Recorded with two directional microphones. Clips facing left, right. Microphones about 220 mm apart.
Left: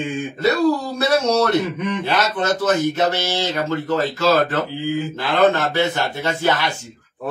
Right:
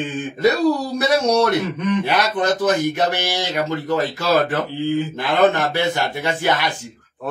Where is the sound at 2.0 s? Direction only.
15° right (ahead or behind).